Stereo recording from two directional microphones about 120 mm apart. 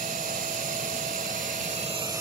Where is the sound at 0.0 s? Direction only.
90° right.